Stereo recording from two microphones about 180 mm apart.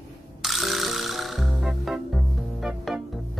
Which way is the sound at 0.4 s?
Centre (ahead or behind).